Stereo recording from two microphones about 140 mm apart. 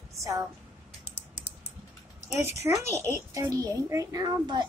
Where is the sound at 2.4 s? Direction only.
15° right (ahead or behind).